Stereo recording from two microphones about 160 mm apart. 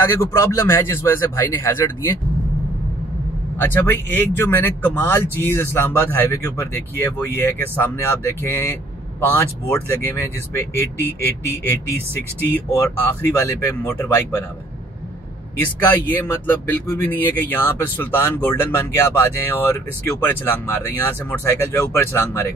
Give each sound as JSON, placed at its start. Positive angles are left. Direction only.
{"t": 0.1, "sound": "speech", "side_deg": 15}
{"t": 3.5, "sound": "speech", "side_deg": 10}
{"t": 12.4, "sound": "speech", "side_deg": 10}
{"t": 16.1, "sound": "speech", "side_deg": 15}